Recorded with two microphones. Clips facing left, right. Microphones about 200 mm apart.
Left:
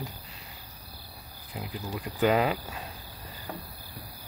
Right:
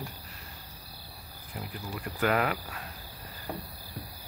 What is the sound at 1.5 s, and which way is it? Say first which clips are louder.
Speech: left 3 dB; 20° left (ahead or behind).